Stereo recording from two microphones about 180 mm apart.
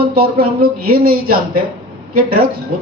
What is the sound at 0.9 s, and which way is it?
Speech, 55° right (ahead or behind).